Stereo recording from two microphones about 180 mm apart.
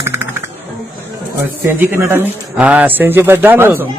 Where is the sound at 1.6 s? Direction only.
10° right (ahead or behind).